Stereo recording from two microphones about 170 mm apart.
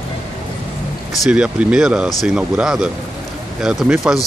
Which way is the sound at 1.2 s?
5° right (ahead or behind).